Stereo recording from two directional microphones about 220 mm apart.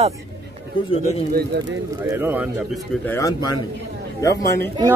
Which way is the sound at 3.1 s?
15° left (ahead or behind).